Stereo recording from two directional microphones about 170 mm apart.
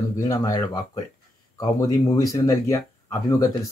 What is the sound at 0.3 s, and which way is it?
Speech, 20° left (ahead or behind).